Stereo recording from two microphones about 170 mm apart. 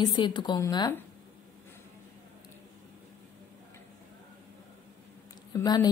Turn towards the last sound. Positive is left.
turn(degrees=25)  # may be behind; listen again after turning